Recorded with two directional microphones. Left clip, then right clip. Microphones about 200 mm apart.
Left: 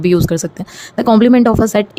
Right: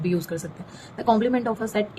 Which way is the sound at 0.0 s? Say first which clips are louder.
Left 14 dB; 50° left (ahead or behind).